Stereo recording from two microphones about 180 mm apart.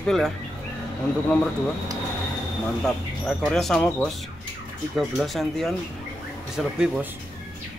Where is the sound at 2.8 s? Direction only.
Centre (ahead or behind).